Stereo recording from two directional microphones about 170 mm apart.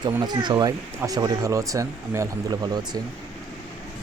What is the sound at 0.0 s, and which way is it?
Speech, 25° right (ahead or behind).